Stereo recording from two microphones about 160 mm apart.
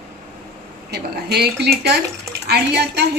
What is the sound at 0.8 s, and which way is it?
A woman's voice, 85° right.